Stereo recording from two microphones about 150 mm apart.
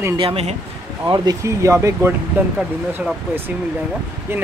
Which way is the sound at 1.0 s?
25° right (ahead or behind).